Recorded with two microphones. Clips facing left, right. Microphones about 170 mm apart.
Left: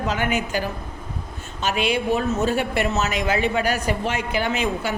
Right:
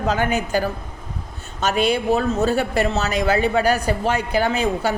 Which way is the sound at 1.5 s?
40° right (ahead or behind).